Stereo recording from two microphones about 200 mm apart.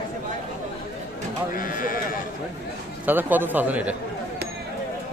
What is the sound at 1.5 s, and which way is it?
Speech, 45° left (ahead or behind).